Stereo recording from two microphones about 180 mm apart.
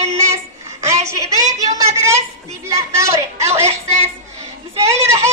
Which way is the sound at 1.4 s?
20° right (ahead or behind).